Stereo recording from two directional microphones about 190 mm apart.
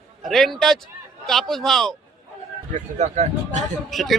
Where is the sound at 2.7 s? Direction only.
40° right (ahead or behind).